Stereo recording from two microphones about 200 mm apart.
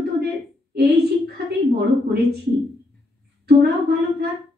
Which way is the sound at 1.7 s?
55° right (ahead or behind).